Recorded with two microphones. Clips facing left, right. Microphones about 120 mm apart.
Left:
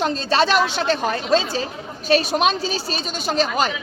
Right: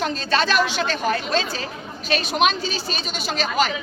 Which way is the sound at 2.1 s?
35° left (ahead or behind).